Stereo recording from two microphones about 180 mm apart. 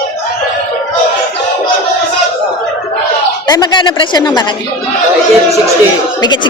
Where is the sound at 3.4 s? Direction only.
25° left (ahead or behind).